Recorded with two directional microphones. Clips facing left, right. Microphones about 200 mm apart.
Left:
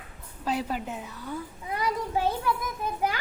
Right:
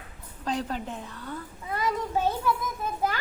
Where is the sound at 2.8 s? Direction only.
15° left (ahead or behind).